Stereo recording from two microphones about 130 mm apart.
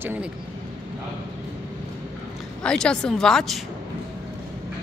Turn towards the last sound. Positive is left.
turn(degrees=0)  # may be behind; listen again after turning